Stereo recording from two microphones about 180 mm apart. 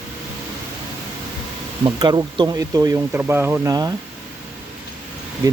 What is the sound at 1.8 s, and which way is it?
Speech, 25° right (ahead or behind).